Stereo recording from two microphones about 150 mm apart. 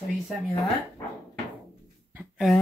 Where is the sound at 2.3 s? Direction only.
Centre (ahead or behind).